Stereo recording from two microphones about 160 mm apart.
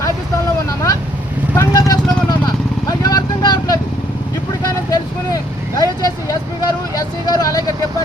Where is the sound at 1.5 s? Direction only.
20° left (ahead or behind).